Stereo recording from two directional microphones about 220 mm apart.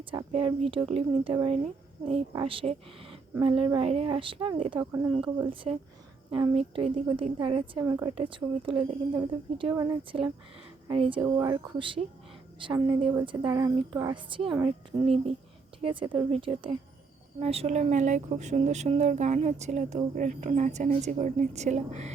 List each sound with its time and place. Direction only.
0.0 s a woman's voice: 25° right (ahead or behind)